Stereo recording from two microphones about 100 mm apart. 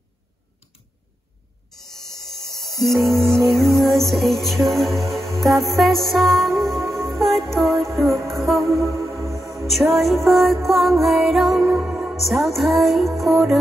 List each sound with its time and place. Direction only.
2.0 s music: 5° left (ahead or behind)
8.8 s music: 30° right (ahead or behind)
9.7 s music: centre (ahead or behind)
12.2 s music: centre (ahead or behind)